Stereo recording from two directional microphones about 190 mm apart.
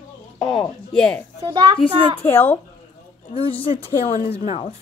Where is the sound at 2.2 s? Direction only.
10° left (ahead or behind).